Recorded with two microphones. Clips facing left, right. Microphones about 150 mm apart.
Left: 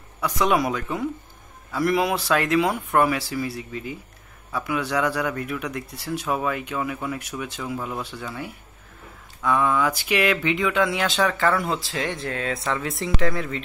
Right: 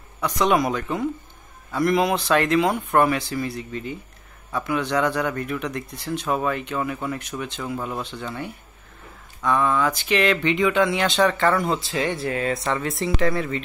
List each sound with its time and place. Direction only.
0.2 s speech: 5° left (ahead or behind)